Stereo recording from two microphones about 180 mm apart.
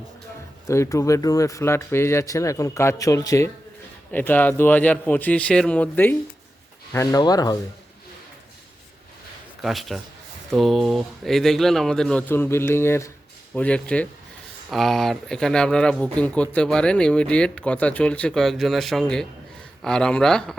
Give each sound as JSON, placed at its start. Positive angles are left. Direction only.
{"t": 0.7, "sound": "speech", "side_deg": 15}
{"t": 9.6, "sound": "speech", "side_deg": 0}